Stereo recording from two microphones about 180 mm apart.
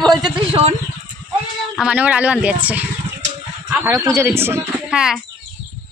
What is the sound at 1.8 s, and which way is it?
Speech, 5° right (ahead or behind).